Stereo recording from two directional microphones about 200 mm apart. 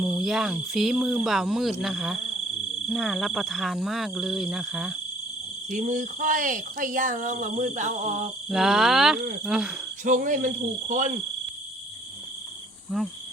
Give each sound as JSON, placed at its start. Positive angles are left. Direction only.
{"t": 0.0, "sound": "speech", "side_deg": 0}
{"t": 5.7, "sound": "speech", "side_deg": -40}
{"t": 8.4, "sound": "speech", "side_deg": 0}
{"t": 10.0, "sound": "speech", "side_deg": -40}
{"t": 12.9, "sound": "speech", "side_deg": 0}